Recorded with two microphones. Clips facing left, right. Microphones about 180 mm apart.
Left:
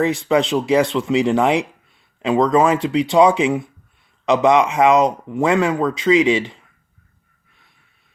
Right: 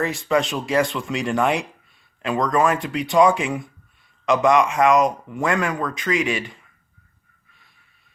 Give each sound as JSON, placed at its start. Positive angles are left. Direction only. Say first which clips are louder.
{"t": 0.0, "sound": "speech", "louder": "left 4 dB", "side_deg": 20}